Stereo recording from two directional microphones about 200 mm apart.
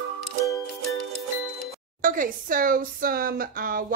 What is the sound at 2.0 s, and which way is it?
Speech, 40° right (ahead or behind).